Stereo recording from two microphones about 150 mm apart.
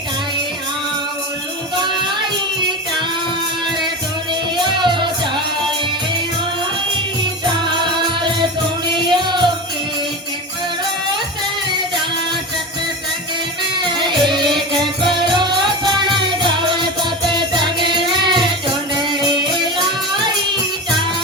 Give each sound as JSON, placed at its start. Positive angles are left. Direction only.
{"t": 1.7, "sound": "music", "side_deg": -30}
{"t": 4.5, "sound": "music", "side_deg": -30}
{"t": 7.4, "sound": "music", "side_deg": -30}
{"t": 9.0, "sound": "music", "side_deg": -30}
{"t": 13.7, "sound": "music", "side_deg": -30}